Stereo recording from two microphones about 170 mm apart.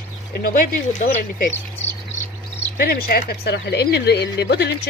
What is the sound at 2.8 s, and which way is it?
A woman's voice, 65° left (ahead or behind).